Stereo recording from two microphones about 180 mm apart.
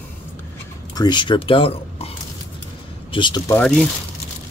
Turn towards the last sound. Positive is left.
turn(degrees=5)  # may be behind; listen again after turning